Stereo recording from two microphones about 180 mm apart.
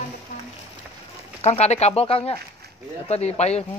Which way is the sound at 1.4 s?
35° left (ahead or behind).